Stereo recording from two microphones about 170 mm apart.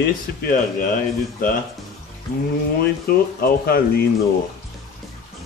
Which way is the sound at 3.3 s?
60° left (ahead or behind).